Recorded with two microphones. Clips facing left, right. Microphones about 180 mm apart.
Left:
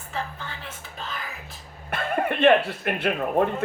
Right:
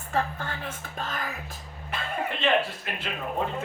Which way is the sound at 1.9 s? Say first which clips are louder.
Left 6 dB; 55° left (ahead or behind).